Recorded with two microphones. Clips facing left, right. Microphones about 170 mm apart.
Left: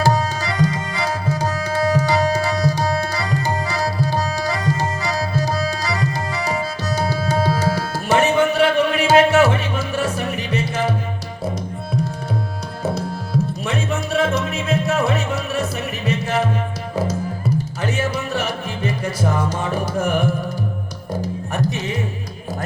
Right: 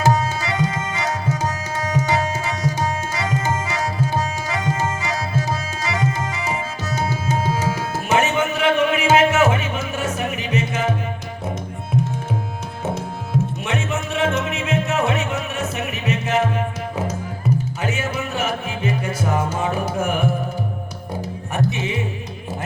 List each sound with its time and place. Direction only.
0.0 s tabla: 35° left (ahead or behind)
13.7 s music: 35° left (ahead or behind)